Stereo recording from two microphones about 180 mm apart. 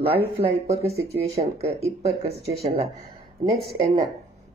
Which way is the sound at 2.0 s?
35° right (ahead or behind).